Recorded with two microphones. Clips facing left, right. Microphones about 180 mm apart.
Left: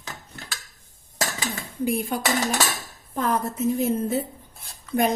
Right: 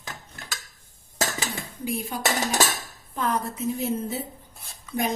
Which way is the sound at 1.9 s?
55° left (ahead or behind).